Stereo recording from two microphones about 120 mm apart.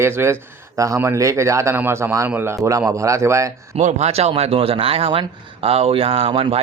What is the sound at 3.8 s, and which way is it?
Speech, 70° right (ahead or behind).